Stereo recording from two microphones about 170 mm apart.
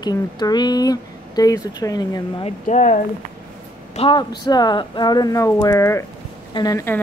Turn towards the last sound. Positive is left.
turn(degrees=15)  # may be behind; listen again after turning